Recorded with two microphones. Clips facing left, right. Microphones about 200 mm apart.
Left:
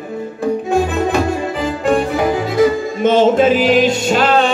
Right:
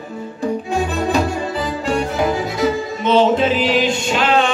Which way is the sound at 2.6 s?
45° left (ahead or behind).